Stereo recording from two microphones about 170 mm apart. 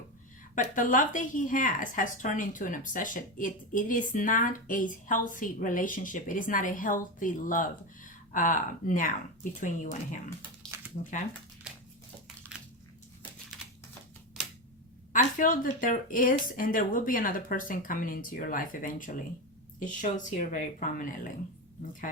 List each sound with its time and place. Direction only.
0.5 s a woman's voice: 50° left (ahead or behind)
10.6 s a sound: 5° left (ahead or behind)
15.1 s a woman's voice: 50° left (ahead or behind)